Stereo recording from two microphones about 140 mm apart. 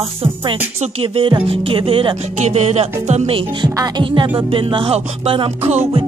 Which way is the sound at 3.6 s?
35° right (ahead or behind).